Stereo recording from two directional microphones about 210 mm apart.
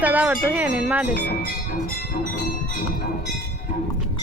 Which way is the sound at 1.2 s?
40° left (ahead or behind).